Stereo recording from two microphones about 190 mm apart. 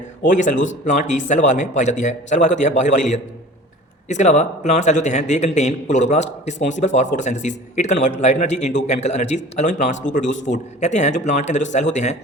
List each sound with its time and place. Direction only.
0.3 s a man's voice: 40° left (ahead or behind)